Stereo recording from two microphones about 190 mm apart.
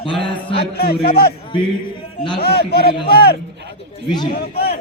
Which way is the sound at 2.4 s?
55° left (ahead or behind).